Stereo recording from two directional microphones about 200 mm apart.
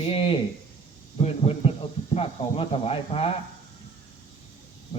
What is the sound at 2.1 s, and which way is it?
Speech, 30° left (ahead or behind).